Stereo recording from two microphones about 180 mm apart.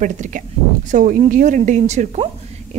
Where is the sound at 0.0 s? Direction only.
45° right (ahead or behind).